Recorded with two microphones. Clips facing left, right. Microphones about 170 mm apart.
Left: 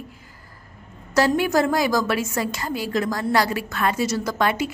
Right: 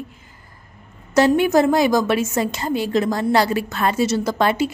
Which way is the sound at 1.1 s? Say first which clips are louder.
Right 4 dB; 20° right (ahead or behind).